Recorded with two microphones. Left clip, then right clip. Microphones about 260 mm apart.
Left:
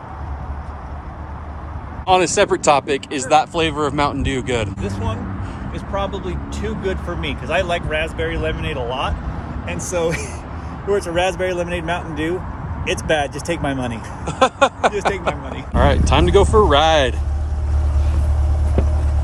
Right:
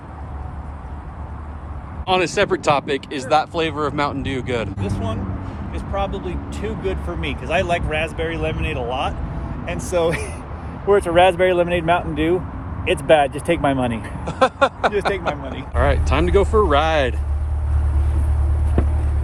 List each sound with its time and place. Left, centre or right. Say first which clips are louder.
2.0 s speech: left 3 dB; centre
14.3 s speech: left 2 dB; centre